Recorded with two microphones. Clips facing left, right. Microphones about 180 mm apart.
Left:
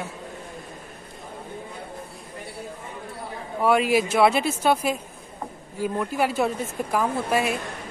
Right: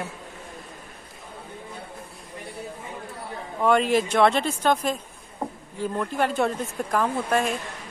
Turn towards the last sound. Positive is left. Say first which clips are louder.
# even
turn(degrees=10)  # may be behind; listen again after turning